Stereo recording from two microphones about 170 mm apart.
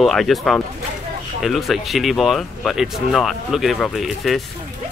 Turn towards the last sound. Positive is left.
turn(degrees=0)  # may be behind; listen again after turning